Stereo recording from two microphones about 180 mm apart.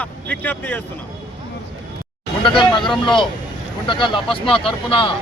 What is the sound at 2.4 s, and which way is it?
Speech, 25° left (ahead or behind).